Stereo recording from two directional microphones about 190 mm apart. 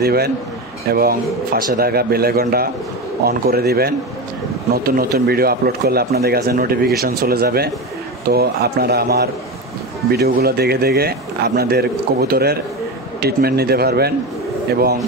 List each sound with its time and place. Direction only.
0.0 s speech: 55° right (ahead or behind)
4.9 s speech: 55° right (ahead or behind)